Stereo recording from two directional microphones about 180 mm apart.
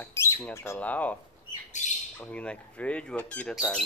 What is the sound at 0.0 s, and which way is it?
Squawk, 15° left (ahead or behind).